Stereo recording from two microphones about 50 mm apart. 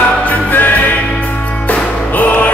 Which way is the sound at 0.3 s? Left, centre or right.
Left.